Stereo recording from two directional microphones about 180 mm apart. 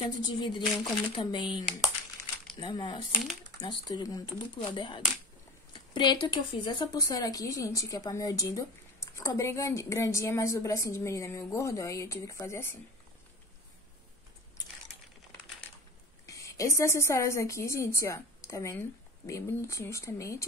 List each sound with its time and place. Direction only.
0.2 s speech: 25° left (ahead or behind)
2.6 s speech: 25° left (ahead or behind)
16.3 s speech: 15° left (ahead or behind)